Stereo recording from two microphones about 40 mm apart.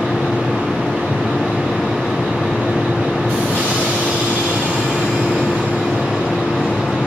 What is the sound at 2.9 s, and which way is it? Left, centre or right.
Train, right.